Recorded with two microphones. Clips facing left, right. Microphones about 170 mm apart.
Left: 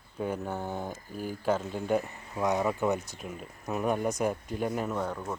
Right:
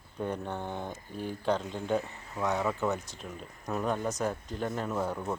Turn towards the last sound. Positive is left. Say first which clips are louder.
# right 1 dB
turn(degrees=-5)  # may be behind; listen again after turning